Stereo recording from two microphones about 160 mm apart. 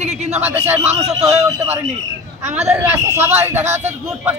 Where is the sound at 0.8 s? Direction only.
45° right (ahead or behind).